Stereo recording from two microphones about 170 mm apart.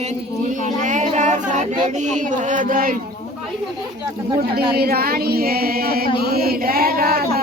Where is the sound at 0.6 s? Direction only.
45° right (ahead or behind).